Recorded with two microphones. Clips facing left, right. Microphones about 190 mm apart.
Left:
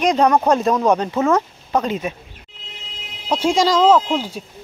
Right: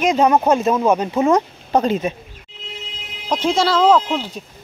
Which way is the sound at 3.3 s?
10° left (ahead or behind).